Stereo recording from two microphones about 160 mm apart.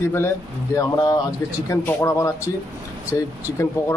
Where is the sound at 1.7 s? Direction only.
20° left (ahead or behind).